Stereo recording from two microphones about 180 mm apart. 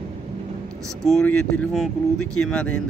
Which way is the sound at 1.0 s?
5° left (ahead or behind).